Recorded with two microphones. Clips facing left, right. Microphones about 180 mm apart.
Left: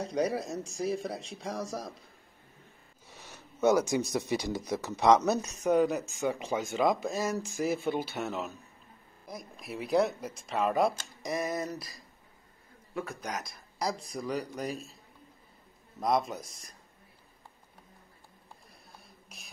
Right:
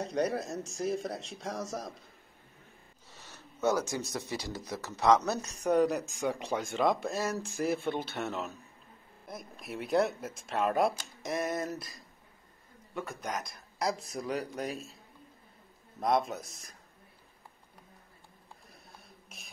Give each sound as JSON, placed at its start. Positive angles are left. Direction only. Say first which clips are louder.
{"t": 0.0, "sound": "speech", "louder": "left 1 dB", "side_deg": 0}
{"t": 3.1, "sound": "speech", "louder": "left 2 dB", "side_deg": 15}
{"t": 5.6, "sound": "speech", "louder": "right 1 dB", "side_deg": 0}
{"t": 13.2, "sound": "speech", "louder": "right 1 dB", "side_deg": 0}
{"t": 16.0, "sound": "speech", "louder": "even", "side_deg": 0}
{"t": 19.0, "sound": "a sound", "louder": "even", "side_deg": 0}